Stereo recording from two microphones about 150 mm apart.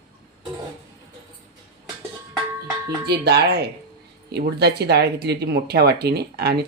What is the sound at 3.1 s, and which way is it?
Speech, 90° right.